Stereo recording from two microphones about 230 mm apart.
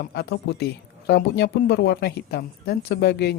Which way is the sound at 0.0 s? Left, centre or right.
Left.